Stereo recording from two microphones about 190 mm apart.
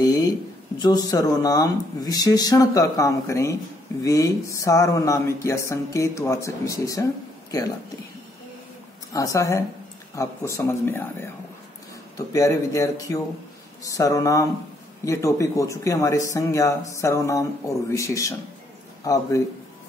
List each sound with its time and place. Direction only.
0.0 s a sound: 20° left (ahead or behind)
0.7 s speech: 20° left (ahead or behind)
9.1 s speech: 15° left (ahead or behind)